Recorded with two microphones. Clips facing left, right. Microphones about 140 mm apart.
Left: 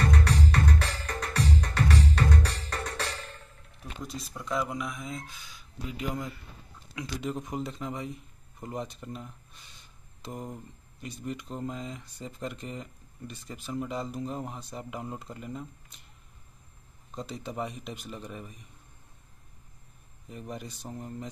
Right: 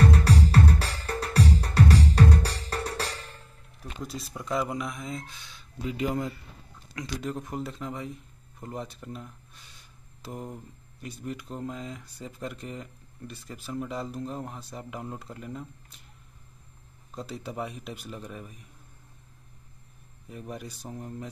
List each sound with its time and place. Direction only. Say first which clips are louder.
0.1 s music: right 4 dB; 30° right (ahead or behind)
4.0 s speech: right 2 dB; centre (ahead or behind)
7.0 s a man's voice: even; centre (ahead or behind)
17.1 s speech: even; 5° right (ahead or behind)
20.2 s speech: right 1 dB; centre (ahead or behind)